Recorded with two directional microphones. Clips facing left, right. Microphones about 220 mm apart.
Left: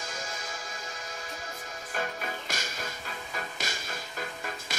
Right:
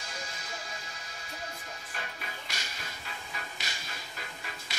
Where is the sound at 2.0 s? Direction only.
45° left (ahead or behind).